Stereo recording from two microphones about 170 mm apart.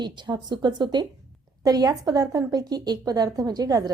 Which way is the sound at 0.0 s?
25° right (ahead or behind).